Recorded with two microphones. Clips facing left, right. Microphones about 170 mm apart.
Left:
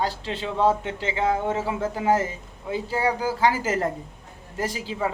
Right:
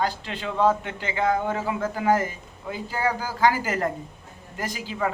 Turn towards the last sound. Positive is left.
turn(degrees=30)  # may be behind; listen again after turning